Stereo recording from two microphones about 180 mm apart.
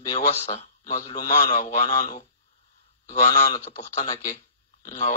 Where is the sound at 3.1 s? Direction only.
40° left (ahead or behind).